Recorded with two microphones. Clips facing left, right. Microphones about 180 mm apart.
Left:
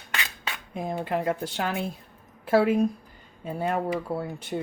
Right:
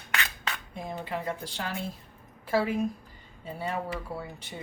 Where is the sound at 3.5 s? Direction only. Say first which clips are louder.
Left 6 dB; 50° left (ahead or behind).